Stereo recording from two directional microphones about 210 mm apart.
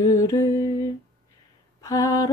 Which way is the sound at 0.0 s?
15° left (ahead or behind).